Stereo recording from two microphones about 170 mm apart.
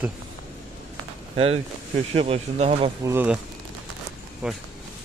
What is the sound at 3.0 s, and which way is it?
Speech, 15° right (ahead or behind).